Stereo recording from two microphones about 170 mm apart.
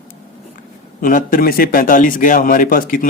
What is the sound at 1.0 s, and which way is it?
Speech, 50° left (ahead or behind).